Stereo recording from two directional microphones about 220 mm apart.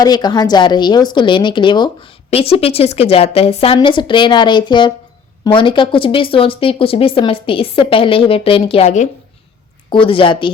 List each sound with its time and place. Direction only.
0.0 s speech: 20° left (ahead or behind)